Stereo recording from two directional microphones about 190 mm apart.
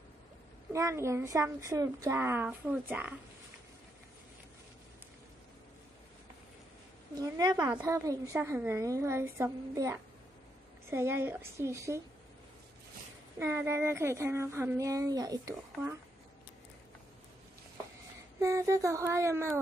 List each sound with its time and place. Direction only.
0.7 s speech: 15° right (ahead or behind)
7.2 s a woman's voice: 20° right (ahead or behind)
13.4 s speech: 15° right (ahead or behind)
18.4 s speech: 15° right (ahead or behind)